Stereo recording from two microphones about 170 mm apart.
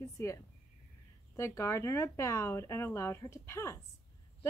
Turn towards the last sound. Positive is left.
turn(degrees=15)  # may be behind; listen again after turning